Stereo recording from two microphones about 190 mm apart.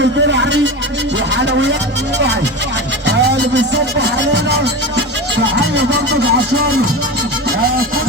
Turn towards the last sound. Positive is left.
turn(degrees=-65)  # may be behind; listen again after turning